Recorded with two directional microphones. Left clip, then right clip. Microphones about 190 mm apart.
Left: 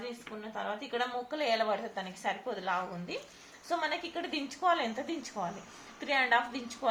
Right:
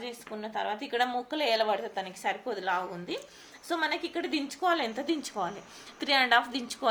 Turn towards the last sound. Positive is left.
turn(degrees=-50)  # may be behind; listen again after turning